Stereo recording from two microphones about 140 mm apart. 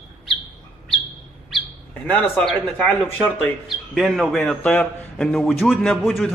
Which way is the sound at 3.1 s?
15° left (ahead or behind).